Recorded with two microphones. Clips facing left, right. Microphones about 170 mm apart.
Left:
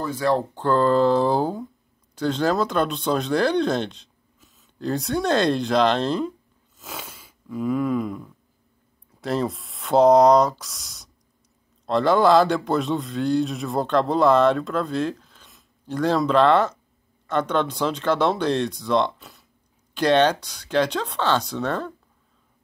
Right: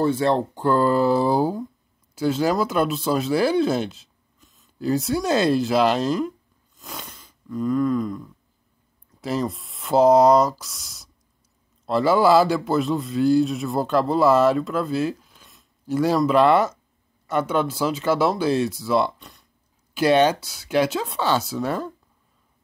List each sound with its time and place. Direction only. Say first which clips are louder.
0.0 s speech: right 3 dB; 25° right (ahead or behind)
0.6 s a man's voice: left 1 dB; 10° right (ahead or behind)
6.8 s a sound: left 1 dB; 5° left (ahead or behind)
9.2 s a man's voice: left 1 dB; centre (ahead or behind)
19.1 s a sound: even; centre (ahead or behind)
19.9 s speech: right 1 dB; 10° right (ahead or behind)